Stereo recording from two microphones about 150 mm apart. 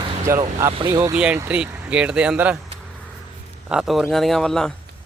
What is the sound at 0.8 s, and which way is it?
Speech, 25° right (ahead or behind).